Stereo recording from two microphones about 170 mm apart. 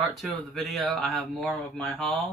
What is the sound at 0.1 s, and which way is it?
Speech, centre (ahead or behind).